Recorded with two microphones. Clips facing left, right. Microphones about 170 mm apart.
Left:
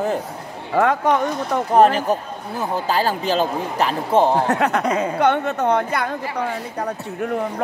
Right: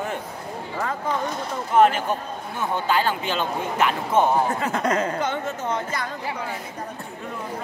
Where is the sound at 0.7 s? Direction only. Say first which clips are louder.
Left 10 dB; 75° left (ahead or behind).